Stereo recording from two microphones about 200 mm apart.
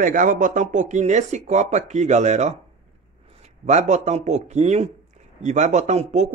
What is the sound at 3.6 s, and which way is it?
A man's voice, 35° right (ahead or behind).